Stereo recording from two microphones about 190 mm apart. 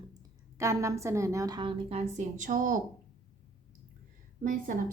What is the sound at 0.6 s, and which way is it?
A woman's voice, 15° right (ahead or behind).